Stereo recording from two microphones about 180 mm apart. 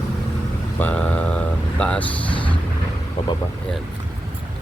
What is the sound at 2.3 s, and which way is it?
Vehicle, 30° left (ahead or behind).